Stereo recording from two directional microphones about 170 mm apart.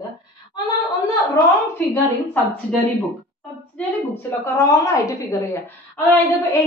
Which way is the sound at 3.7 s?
15° left (ahead or behind).